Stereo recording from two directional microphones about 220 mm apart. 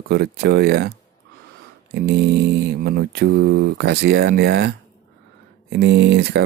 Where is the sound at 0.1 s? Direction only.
50° right (ahead or behind).